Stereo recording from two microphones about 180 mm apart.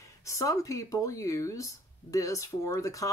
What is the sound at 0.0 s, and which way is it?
Speech, 15° left (ahead or behind).